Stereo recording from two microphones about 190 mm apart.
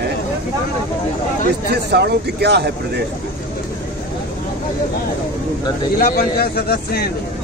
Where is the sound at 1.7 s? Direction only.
60° right (ahead or behind).